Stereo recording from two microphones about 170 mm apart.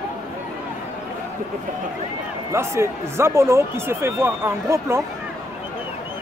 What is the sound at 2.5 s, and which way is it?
Speech, 15° right (ahead or behind).